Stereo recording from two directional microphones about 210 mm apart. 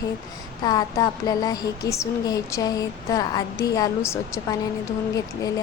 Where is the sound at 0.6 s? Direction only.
20° left (ahead or behind).